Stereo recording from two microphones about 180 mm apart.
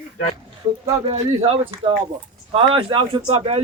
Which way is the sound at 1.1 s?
30° right (ahead or behind).